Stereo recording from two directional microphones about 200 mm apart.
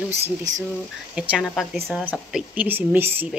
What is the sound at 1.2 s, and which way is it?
A woman's voice, 5° right (ahead or behind).